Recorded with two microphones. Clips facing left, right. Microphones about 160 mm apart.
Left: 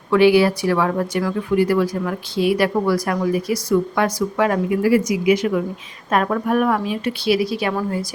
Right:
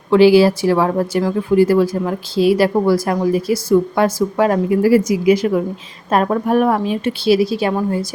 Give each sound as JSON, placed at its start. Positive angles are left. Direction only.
{"t": 0.1, "sound": "a woman's voice", "side_deg": -30}